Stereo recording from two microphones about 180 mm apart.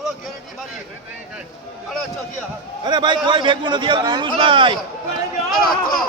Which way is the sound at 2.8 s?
25° right (ahead or behind).